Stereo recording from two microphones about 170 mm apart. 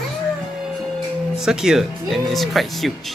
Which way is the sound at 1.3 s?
5° right (ahead or behind).